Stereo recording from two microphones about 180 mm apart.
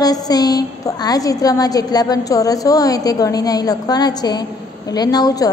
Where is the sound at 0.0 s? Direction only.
20° left (ahead or behind).